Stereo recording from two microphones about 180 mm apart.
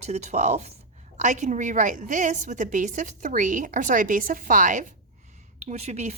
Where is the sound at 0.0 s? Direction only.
40° right (ahead or behind).